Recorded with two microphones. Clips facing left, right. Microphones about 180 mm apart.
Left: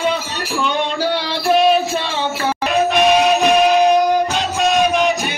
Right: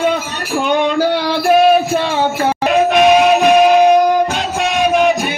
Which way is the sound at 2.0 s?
50° right (ahead or behind).